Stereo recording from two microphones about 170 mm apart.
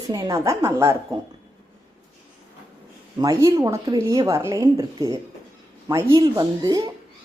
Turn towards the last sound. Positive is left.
turn(degrees=-20)  # may be behind; listen again after turning